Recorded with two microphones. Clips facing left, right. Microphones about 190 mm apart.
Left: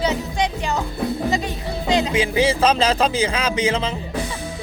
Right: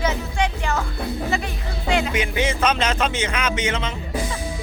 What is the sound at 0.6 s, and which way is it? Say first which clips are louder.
Speech: left 1 dB; 15° left (ahead or behind).